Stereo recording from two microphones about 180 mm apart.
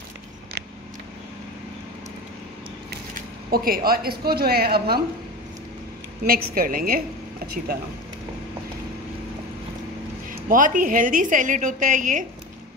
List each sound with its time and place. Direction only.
2.9 s speech: 55° right (ahead or behind)
6.2 s a woman's voice: 50° right (ahead or behind)
10.3 s a woman's voice: 50° right (ahead or behind)